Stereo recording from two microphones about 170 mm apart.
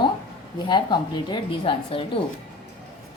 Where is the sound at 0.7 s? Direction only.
25° left (ahead or behind).